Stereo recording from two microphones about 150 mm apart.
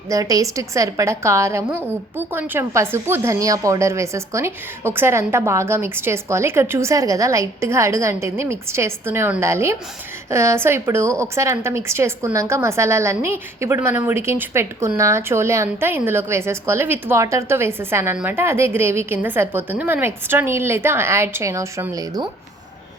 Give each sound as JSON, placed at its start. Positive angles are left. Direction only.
{"t": 0.1, "sound": "a woman's voice", "side_deg": -25}